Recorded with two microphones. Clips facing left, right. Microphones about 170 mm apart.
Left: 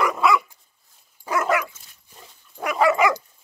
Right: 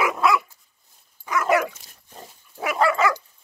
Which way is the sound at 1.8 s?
45° right (ahead or behind).